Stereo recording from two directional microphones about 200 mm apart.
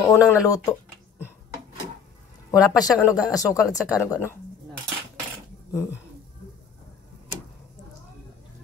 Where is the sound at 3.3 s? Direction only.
15° left (ahead or behind).